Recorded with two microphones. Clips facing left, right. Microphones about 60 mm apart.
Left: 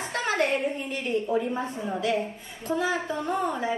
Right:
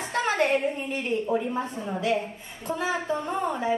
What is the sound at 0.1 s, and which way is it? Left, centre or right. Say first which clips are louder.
A woman's voice: right 2 dB; right.